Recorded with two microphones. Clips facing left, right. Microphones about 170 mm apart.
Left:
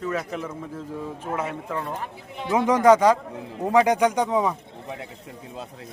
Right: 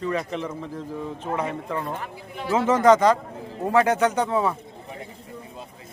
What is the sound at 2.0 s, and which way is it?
A man's voice, 20° left (ahead or behind).